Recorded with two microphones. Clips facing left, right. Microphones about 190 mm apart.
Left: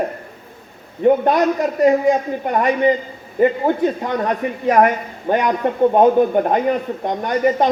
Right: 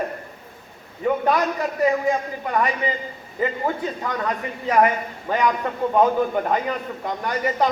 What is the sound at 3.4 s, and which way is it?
Speech, 30° left (ahead or behind).